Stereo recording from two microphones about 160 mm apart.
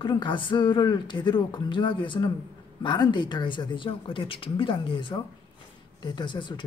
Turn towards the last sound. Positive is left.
turn(degrees=30)  # may be behind; listen again after turning